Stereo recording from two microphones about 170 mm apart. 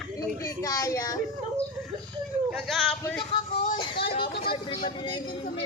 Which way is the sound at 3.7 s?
30° left (ahead or behind).